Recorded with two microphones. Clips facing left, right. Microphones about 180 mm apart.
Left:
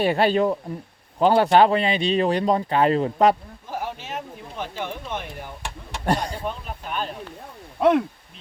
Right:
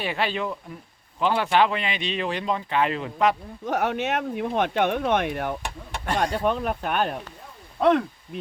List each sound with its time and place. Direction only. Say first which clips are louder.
0.0 s speech: left 8 dB; 45° left (ahead or behind)
3.7 s speech: right 7 dB; 70° right (ahead or behind)
7.8 s speech: left 1 dB; 10° left (ahead or behind)